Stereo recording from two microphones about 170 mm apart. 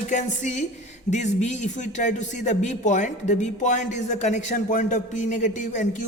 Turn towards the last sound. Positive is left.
turn(degrees=45)  # may be behind; listen again after turning